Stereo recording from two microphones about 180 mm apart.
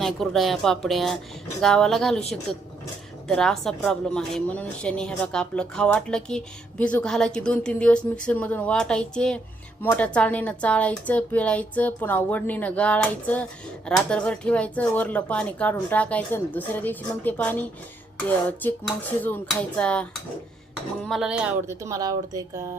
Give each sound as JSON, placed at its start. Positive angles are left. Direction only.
{"t": 0.0, "sound": "a woman's voice", "side_deg": 0}
{"t": 3.2, "sound": "a woman's voice", "side_deg": 0}